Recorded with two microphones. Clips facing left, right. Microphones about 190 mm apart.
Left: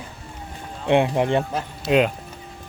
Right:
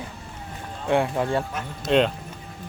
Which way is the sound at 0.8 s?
20° left (ahead or behind).